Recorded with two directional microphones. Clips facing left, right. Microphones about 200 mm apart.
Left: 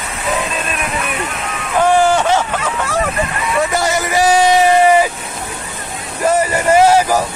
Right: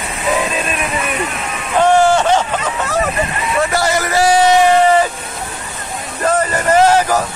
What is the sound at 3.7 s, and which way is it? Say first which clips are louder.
Speech: even; 15° left (ahead or behind).